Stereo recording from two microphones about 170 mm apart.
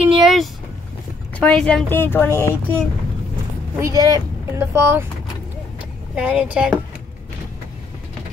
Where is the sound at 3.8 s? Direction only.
20° right (ahead or behind).